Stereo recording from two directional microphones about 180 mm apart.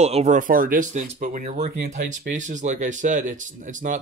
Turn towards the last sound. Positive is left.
turn(degrees=-45)  # may be behind; listen again after turning